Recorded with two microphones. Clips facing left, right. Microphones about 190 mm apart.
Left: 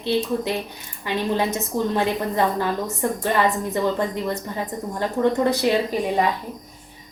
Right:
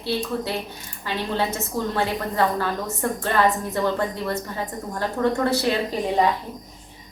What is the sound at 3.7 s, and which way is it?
A woman's voice, 15° left (ahead or behind).